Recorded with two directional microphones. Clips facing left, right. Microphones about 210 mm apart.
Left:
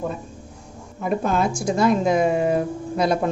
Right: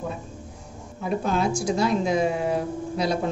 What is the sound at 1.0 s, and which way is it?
A woman's voice, 50° left (ahead or behind).